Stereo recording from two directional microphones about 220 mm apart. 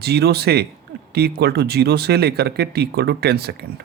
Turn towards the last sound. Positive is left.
turn(degrees=-45)  # may be behind; listen again after turning